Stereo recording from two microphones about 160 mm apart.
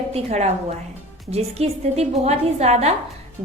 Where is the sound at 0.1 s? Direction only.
45° right (ahead or behind).